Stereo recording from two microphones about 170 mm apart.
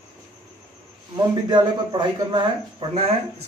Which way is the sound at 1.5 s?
25° right (ahead or behind).